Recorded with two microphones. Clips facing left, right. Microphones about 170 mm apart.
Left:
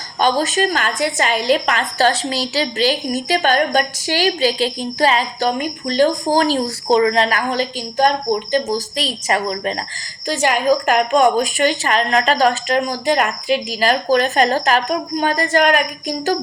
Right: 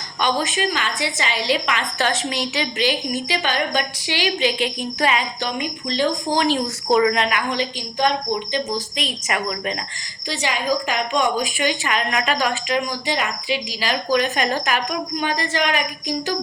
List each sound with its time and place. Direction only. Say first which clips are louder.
0.2 s a woman's voice: left 5 dB; 40° left (ahead or behind)
10.2 s a woman's voice: left 7 dB; 50° left (ahead or behind)